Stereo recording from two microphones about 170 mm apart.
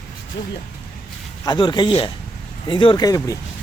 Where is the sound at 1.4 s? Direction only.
25° left (ahead or behind).